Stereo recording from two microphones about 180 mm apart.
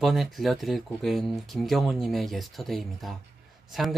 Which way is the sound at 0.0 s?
Centre (ahead or behind).